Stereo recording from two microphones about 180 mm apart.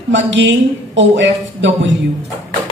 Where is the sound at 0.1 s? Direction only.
90° right.